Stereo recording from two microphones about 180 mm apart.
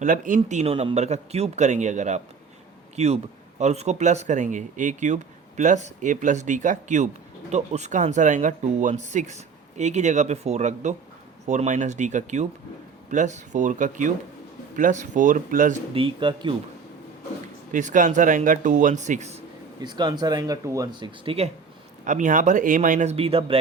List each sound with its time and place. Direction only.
0.0 s a man's voice: 45° right (ahead or behind)
16.0 s speech: 30° right (ahead or behind)
17.7 s speech: 45° right (ahead or behind)
19.8 s speech: 25° right (ahead or behind)
22.0 s speech: 45° right (ahead or behind)